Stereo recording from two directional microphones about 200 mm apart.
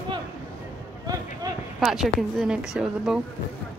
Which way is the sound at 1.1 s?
20° right (ahead or behind).